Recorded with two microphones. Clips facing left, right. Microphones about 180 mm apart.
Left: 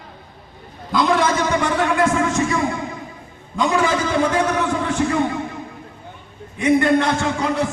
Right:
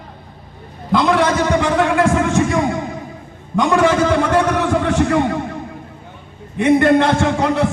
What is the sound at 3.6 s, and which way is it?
A man's voice, 60° right (ahead or behind).